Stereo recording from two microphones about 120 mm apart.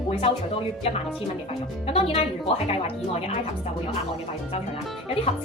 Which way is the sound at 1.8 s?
55° left (ahead or behind).